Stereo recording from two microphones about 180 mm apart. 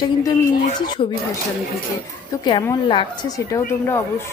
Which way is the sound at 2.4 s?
25° left (ahead or behind).